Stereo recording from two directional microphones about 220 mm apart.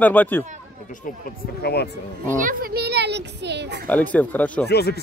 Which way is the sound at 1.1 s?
40° left (ahead or behind).